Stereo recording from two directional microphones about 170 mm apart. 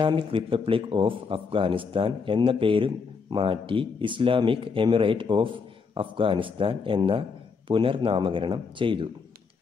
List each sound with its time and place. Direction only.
0.0 s speech: 30° right (ahead or behind)